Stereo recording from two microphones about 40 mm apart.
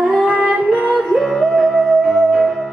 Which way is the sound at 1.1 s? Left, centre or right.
Left.